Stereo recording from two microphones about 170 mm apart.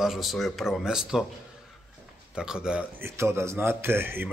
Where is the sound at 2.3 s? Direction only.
5° right (ahead or behind).